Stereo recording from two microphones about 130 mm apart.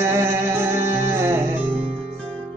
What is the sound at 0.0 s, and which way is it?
Music, 20° right (ahead or behind).